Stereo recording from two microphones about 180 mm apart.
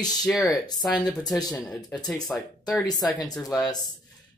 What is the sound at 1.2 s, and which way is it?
Speech, 20° left (ahead or behind).